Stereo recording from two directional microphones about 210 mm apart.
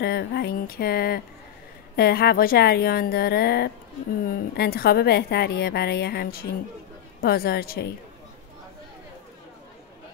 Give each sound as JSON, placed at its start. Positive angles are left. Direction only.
{"t": 0.0, "sound": "a woman's voice", "side_deg": 50}